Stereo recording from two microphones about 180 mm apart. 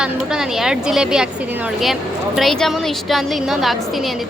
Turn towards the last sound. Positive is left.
turn(degrees=0)  # may be behind; listen again after turning